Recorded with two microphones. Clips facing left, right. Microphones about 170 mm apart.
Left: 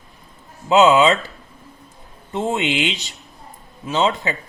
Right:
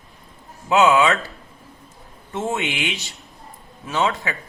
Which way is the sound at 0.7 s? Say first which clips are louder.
Left 3 dB; 20° left (ahead or behind).